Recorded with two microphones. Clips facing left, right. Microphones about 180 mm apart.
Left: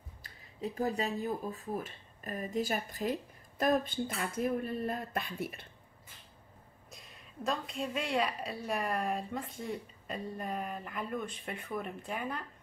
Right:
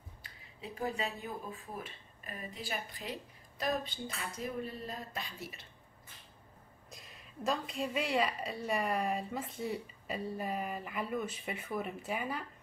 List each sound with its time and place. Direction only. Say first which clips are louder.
0.2 s speech: left 9 dB; 40° left (ahead or behind); by 5.7 s 55° left (ahead or behind)
6.9 s a woman's voice: even; centre (ahead or behind)